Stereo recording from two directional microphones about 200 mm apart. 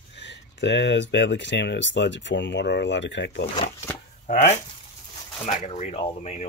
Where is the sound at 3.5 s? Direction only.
20° left (ahead or behind).